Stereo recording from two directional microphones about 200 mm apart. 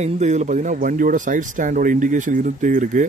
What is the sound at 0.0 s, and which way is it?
Speech, 35° right (ahead or behind).